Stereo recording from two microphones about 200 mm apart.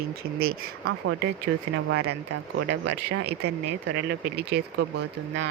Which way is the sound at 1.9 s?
55° right (ahead or behind).